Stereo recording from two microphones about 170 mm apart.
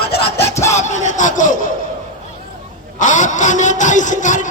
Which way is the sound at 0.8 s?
45° left (ahead or behind).